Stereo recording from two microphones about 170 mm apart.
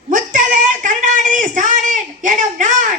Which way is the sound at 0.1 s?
50° right (ahead or behind).